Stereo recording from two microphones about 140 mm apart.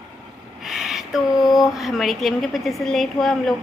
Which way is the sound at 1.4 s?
Centre (ahead or behind).